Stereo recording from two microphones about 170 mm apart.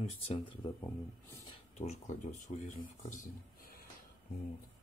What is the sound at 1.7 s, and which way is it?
Speech, 45° left (ahead or behind).